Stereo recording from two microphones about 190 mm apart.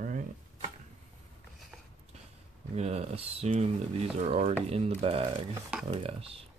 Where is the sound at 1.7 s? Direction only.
Centre (ahead or behind).